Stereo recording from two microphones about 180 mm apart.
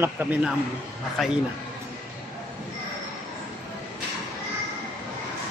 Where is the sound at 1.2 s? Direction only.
Centre (ahead or behind).